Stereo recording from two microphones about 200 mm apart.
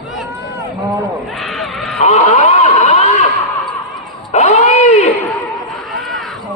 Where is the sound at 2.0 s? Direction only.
35° left (ahead or behind).